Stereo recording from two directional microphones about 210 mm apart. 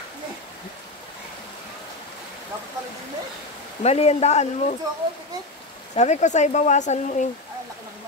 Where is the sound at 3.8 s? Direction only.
30° left (ahead or behind).